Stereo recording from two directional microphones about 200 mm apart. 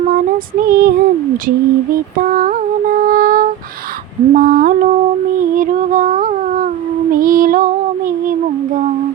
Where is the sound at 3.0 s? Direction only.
45° right (ahead or behind).